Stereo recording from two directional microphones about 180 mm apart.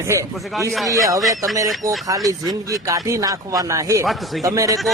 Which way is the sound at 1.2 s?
Centre (ahead or behind).